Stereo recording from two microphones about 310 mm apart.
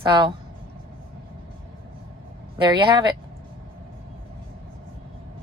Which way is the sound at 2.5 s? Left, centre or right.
Centre.